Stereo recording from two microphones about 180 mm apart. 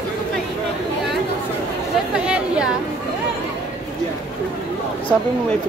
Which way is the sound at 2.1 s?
5° right (ahead or behind).